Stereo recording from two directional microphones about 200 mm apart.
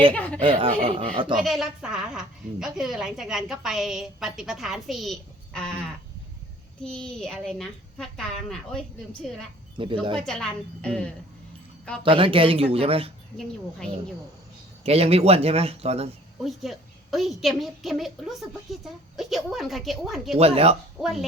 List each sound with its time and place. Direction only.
0.1 s speech: 5° left (ahead or behind)
0.4 s speech: 25° right (ahead or behind)
1.4 s a woman's voice: centre (ahead or behind)
6.8 s a woman's voice: 5° left (ahead or behind)
9.7 s speech: 25° right (ahead or behind)
10.2 s a woman's voice: centre (ahead or behind)
12.0 s speech: 25° right (ahead or behind)
13.3 s a woman's voice: centre (ahead or behind)
14.8 s speech: 30° right (ahead or behind)
16.4 s a woman's voice: centre (ahead or behind)
20.4 s speech: 30° right (ahead or behind)
21.0 s a woman's voice: centre (ahead or behind)